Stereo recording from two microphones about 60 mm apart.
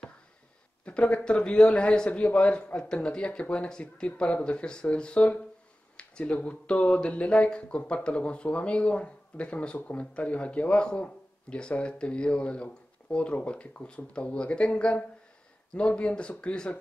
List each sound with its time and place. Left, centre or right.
0.8 s a man's voice: centre